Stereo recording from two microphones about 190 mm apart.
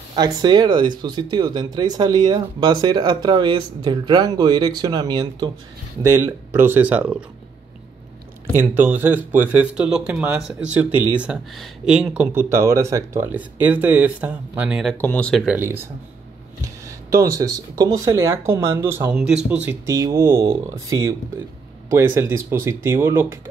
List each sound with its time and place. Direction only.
0.1 s speech: 20° right (ahead or behind)
6.0 s speech: 10° right (ahead or behind)
8.5 s speech: 10° right (ahead or behind)
15.4 s speech: 10° right (ahead or behind)